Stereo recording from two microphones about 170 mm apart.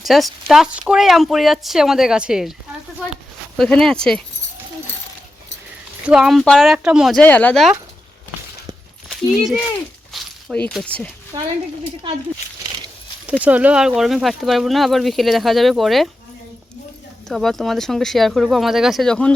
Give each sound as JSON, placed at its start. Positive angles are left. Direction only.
{"t": 0.0, "sound": "speech", "side_deg": 0}
{"t": 3.6, "sound": "speech", "side_deg": 5}
{"t": 6.1, "sound": "speech", "side_deg": -5}
{"t": 7.2, "sound": "speech", "side_deg": 10}
{"t": 10.1, "sound": "a sound", "side_deg": 5}
{"t": 11.3, "sound": "speech", "side_deg": -30}
{"t": 13.4, "sound": "speech", "side_deg": -10}
{"t": 17.2, "sound": "speech", "side_deg": 0}